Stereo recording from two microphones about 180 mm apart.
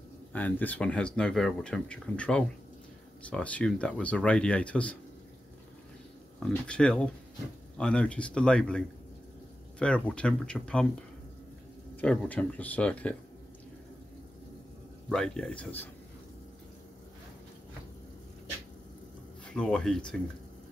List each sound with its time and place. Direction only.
0.3 s speech: 10° left (ahead or behind)
6.5 s speech: 5° left (ahead or behind)
12.0 s speech: 5° left (ahead or behind)
15.0 s speech: 5° left (ahead or behind)
19.4 s speech: 5° left (ahead or behind)